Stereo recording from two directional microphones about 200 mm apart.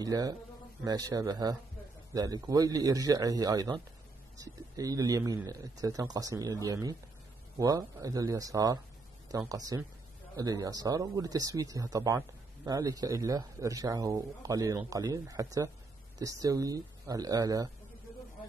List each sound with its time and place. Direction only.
0.0 s a man's voice: 20° right (ahead or behind)